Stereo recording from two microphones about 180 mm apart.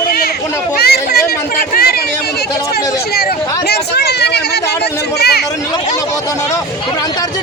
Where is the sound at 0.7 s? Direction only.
60° left (ahead or behind).